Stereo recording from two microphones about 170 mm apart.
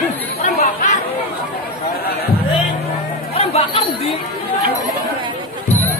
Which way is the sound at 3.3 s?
35° left (ahead or behind).